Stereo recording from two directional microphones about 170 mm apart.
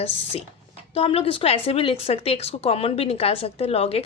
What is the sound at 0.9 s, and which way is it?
A woman's voice, 35° left (ahead or behind).